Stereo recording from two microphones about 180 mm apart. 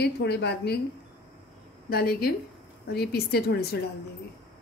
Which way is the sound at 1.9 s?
60° left (ahead or behind).